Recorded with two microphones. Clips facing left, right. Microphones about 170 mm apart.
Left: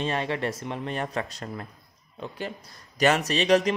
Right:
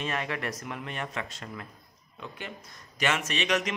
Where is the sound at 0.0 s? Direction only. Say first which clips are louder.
Left 5 dB; 30° left (ahead or behind).